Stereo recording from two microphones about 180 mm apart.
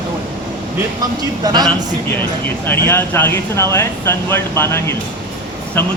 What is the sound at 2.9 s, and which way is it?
Speech, 10° left (ahead or behind).